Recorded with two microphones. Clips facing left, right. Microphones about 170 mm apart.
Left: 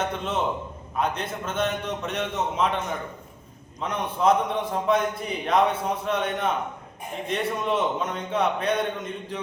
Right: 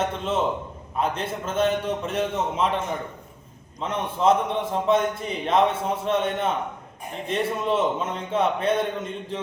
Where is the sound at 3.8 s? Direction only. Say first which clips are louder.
Right 1 dB; 25° right (ahead or behind).